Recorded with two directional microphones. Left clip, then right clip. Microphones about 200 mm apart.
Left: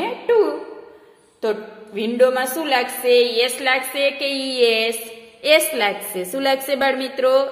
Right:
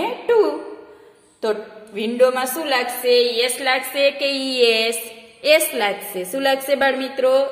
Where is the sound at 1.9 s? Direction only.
10° left (ahead or behind).